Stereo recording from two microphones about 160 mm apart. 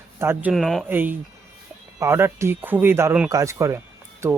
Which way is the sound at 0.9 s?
10° right (ahead or behind).